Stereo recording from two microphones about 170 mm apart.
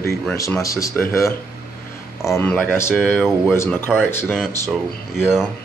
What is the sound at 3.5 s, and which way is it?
Speech, 15° left (ahead or behind).